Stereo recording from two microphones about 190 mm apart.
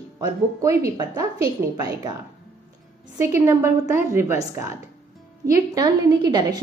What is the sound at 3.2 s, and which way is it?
A woman's voice, 15° right (ahead or behind).